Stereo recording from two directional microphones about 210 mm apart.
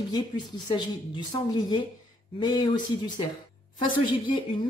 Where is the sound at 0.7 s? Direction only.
20° left (ahead or behind).